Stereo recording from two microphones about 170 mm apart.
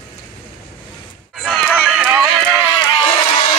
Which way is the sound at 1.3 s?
Centre (ahead or behind).